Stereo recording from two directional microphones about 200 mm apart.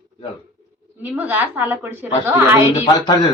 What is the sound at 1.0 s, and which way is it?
A woman's voice, 10° right (ahead or behind).